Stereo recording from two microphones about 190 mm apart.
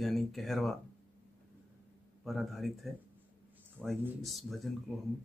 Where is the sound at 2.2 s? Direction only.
Centre (ahead or behind).